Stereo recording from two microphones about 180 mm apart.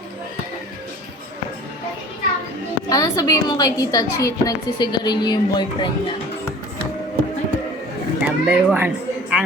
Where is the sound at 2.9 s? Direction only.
20° left (ahead or behind).